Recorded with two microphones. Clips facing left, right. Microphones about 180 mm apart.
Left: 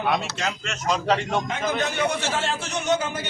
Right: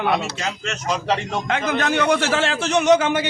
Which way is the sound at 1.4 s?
80° right.